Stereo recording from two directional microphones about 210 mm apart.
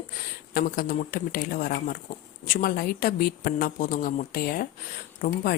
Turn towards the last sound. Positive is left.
turn(degrees=45)  # may be behind; listen again after turning